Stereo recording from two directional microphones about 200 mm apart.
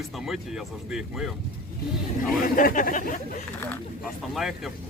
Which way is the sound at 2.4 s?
45° left (ahead or behind).